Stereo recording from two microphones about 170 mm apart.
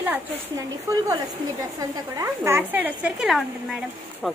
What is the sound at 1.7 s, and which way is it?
Speech, 20° right (ahead or behind).